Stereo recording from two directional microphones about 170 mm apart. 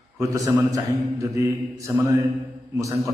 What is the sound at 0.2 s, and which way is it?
A man's voice, 15° right (ahead or behind).